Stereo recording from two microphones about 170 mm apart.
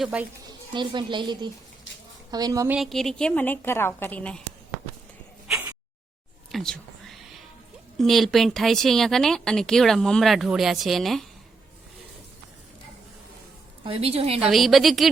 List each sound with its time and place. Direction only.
0.0 s speech: 5° right (ahead or behind)
0.7 s speech: 25° right (ahead or behind)
2.7 s a woman's voice: centre (ahead or behind)
6.5 s whispering: centre (ahead or behind)
7.9 s speech: centre (ahead or behind)
13.8 s a woman's voice: 35° right (ahead or behind)
14.5 s speech: centre (ahead or behind)